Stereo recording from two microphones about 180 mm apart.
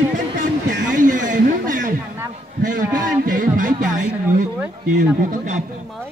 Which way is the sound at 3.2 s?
50° right (ahead or behind).